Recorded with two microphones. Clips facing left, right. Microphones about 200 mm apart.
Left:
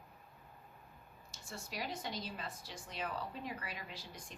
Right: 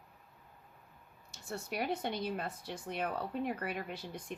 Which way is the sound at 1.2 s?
60° right (ahead or behind).